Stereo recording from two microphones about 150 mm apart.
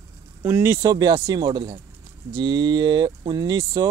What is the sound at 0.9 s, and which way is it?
Speech, 30° right (ahead or behind).